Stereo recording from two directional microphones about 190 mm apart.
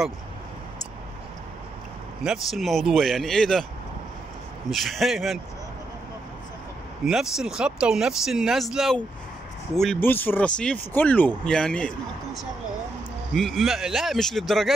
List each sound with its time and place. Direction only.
2.2 s speech: centre (ahead or behind)
4.6 s speech: centre (ahead or behind)
7.1 s speech: 5° right (ahead or behind)
13.3 s speech: centre (ahead or behind)